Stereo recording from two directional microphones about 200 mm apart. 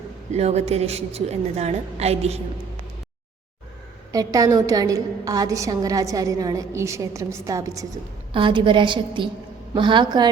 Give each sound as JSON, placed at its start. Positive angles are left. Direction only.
{"t": 0.3, "sound": "a woman's voice", "side_deg": -35}
{"t": 4.1, "sound": "a woman's voice", "side_deg": -20}